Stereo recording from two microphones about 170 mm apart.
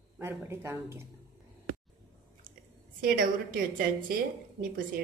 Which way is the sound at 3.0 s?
60° right (ahead or behind).